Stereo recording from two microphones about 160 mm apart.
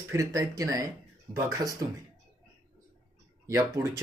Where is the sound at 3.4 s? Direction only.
20° right (ahead or behind).